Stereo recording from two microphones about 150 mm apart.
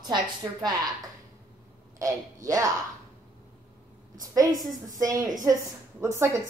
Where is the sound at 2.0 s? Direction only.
20° right (ahead or behind).